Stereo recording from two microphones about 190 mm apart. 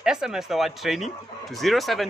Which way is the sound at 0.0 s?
5° right (ahead or behind).